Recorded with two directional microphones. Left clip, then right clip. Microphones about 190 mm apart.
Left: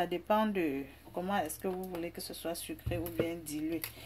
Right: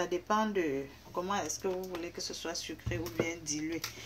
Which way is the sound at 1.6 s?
35° left (ahead or behind).